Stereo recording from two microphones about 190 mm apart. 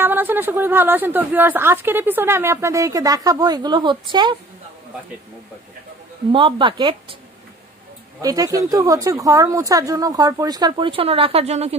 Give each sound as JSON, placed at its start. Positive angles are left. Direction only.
{"t": 0.0, "sound": "speech", "side_deg": -10}
{"t": 6.3, "sound": "a woman's voice", "side_deg": -25}
{"t": 8.2, "sound": "a woman's voice", "side_deg": -20}